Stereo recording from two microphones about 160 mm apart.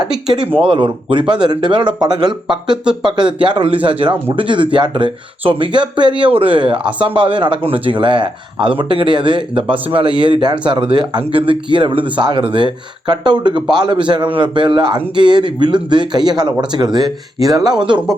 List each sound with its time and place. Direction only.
0.6 s speech: 30° right (ahead or behind)